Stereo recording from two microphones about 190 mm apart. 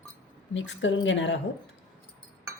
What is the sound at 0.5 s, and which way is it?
Speech, 70° left (ahead or behind).